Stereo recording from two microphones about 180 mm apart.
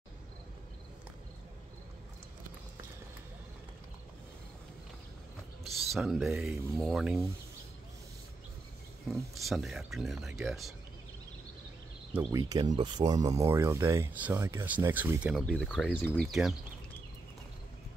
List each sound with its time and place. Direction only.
5.9 s speech: centre (ahead or behind)
9.3 s speech: centre (ahead or behind)
12.1 s speech: 10° right (ahead or behind)
12.4 s speech: 20° right (ahead or behind); by 16.5 s centre (ahead or behind)